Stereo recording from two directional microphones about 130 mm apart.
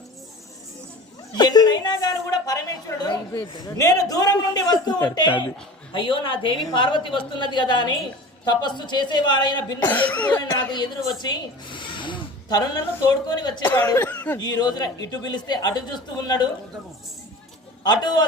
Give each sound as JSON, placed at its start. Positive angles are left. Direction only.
{"t": 1.3, "sound": "a woman's voice", "side_deg": 30}
{"t": 9.8, "sound": "speech", "side_deg": 15}
{"t": 10.4, "sound": "a woman's voice", "side_deg": 35}
{"t": 14.0, "sound": "speech", "side_deg": 15}
{"t": 14.3, "sound": "a woman's voice", "side_deg": 30}
{"t": 17.8, "sound": "a woman's voice", "side_deg": 35}